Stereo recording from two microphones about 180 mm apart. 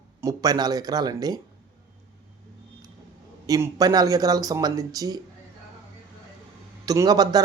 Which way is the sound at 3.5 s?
15° right (ahead or behind).